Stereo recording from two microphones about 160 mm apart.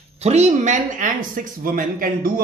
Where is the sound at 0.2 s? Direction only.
45° right (ahead or behind).